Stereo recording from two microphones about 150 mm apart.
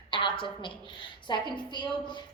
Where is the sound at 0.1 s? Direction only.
35° left (ahead or behind).